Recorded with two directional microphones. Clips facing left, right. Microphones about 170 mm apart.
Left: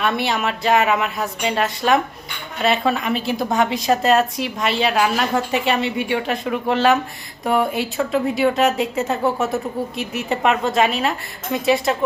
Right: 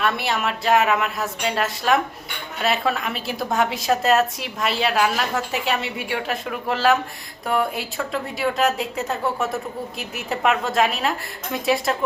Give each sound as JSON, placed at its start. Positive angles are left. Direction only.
{"t": 0.0, "sound": "a woman's voice", "side_deg": 0}